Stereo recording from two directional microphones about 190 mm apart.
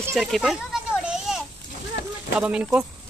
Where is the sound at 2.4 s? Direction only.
5° right (ahead or behind).